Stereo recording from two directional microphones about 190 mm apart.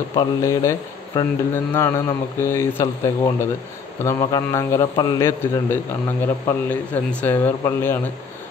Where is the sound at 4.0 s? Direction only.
15° left (ahead or behind).